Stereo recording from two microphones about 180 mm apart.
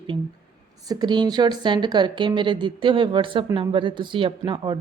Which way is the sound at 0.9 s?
25° right (ahead or behind).